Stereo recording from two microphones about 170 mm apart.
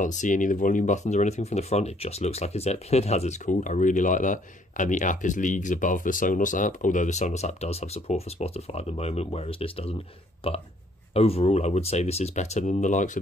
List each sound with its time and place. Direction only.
0.0 s speech: 45° left (ahead or behind)